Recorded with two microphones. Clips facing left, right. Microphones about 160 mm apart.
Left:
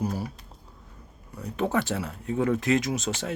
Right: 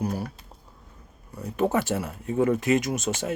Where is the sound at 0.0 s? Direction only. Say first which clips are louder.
Right 1 dB; centre (ahead or behind).